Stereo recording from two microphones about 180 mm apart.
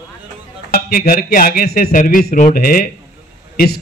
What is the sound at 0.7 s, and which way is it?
A man's voice, 50° left (ahead or behind).